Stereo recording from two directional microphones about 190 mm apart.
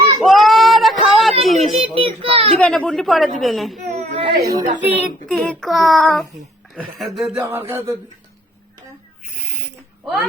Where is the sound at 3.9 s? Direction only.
35° right (ahead or behind).